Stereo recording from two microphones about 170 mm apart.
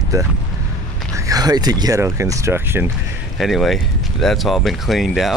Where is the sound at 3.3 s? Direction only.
Centre (ahead or behind).